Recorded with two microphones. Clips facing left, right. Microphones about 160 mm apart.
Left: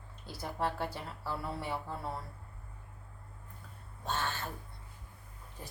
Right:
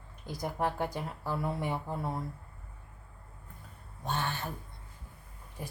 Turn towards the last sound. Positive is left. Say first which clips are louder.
# right 6 dB
turn(degrees=-10)  # may be behind; listen again after turning